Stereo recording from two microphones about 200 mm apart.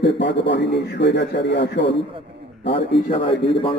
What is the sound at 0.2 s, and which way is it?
A man's voice, 60° left (ahead or behind).